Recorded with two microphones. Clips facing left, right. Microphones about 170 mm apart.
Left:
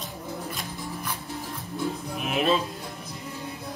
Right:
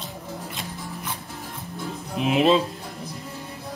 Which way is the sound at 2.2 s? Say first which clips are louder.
Right 6 dB; 20° right (ahead or behind).